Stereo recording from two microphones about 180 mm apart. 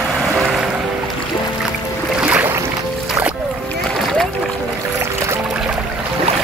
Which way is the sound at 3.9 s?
Centre (ahead or behind).